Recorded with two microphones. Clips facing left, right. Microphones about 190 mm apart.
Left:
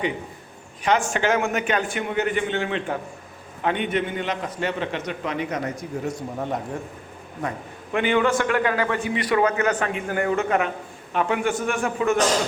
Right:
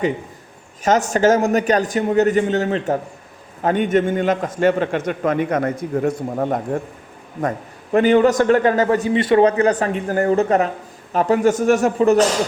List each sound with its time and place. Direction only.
0.9 s a man's voice: 40° right (ahead or behind)
7.9 s a man's voice: 40° right (ahead or behind)
9.1 s a man's voice: 30° right (ahead or behind)